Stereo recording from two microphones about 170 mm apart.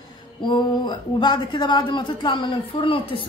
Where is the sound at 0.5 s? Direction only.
25° left (ahead or behind).